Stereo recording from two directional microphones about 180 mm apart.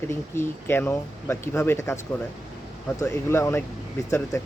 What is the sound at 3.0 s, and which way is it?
Speech, 15° left (ahead or behind).